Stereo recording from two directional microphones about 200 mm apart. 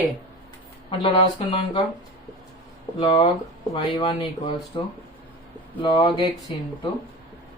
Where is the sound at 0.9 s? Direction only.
25° left (ahead or behind).